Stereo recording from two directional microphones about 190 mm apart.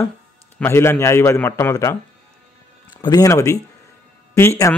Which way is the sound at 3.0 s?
20° left (ahead or behind).